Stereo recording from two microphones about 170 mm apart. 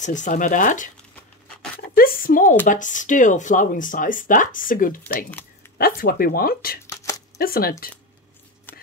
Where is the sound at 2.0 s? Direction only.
55° left (ahead or behind).